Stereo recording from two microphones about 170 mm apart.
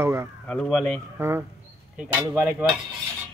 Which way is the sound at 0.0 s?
15° right (ahead or behind).